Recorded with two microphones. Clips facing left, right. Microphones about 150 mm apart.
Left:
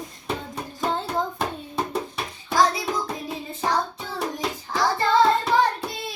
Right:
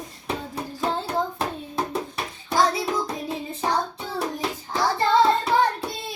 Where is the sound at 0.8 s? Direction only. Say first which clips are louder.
Even; centre (ahead or behind).